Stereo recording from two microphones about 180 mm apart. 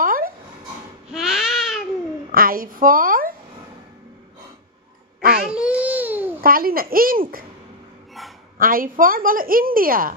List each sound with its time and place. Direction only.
0.0 s a sound: 50° right (ahead or behind)
1.1 s baby cry: centre (ahead or behind)
2.3 s a woman's voice: 55° right (ahead or behind)
5.4 s babbling: 5° right (ahead or behind)
6.4 s a woman's voice: 55° right (ahead or behind)
8.2 s a sound: centre (ahead or behind)
8.5 s a woman's voice: 50° right (ahead or behind)